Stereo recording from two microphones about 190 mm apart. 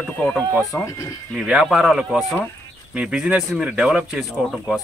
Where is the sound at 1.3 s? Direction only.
5° right (ahead or behind).